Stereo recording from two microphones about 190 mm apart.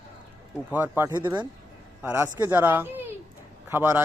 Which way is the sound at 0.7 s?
10° right (ahead or behind).